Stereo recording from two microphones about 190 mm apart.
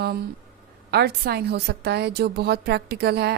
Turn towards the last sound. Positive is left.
turn(degrees=-55)  # may be behind; listen again after turning